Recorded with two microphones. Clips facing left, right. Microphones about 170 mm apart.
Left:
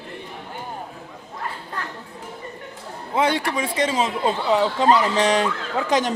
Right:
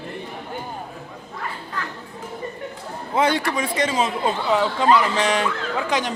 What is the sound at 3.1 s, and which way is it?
A man's voice, 25° left (ahead or behind).